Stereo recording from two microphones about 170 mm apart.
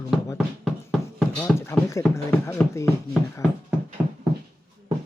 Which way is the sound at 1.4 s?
15° left (ahead or behind).